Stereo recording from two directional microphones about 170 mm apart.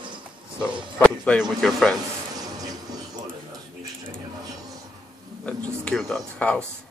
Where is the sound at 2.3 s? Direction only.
20° right (ahead or behind).